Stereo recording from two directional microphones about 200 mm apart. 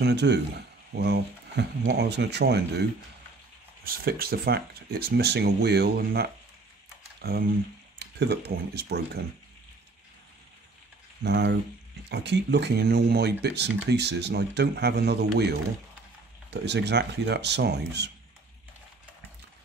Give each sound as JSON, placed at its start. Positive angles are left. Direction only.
{"t": 0.0, "sound": "speech", "side_deg": -60}
{"t": 3.8, "sound": "speech", "side_deg": -50}
{"t": 11.2, "sound": "speech", "side_deg": -55}